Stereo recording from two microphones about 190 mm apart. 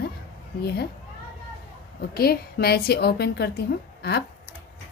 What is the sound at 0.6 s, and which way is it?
Speech, 60° left (ahead or behind).